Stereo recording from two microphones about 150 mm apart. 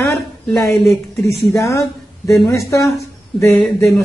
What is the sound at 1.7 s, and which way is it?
Speech, 20° left (ahead or behind).